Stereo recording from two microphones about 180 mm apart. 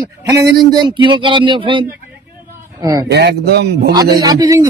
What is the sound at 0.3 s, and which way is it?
A man's voice, 20° right (ahead or behind).